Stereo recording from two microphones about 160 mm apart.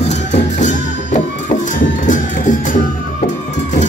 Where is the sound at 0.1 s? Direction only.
45° left (ahead or behind).